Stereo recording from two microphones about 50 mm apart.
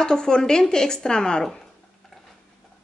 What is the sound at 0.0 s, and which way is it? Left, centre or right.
Speech, centre.